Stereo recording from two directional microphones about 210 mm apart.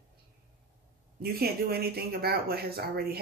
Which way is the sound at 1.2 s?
45° right (ahead or behind).